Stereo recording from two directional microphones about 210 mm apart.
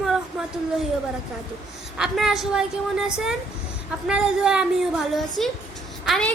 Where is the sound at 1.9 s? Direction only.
Centre (ahead or behind).